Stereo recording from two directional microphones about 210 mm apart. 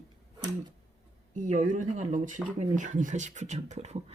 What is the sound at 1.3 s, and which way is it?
Speech, 35° right (ahead or behind).